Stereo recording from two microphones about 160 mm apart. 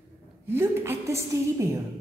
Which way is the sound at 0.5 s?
15° right (ahead or behind).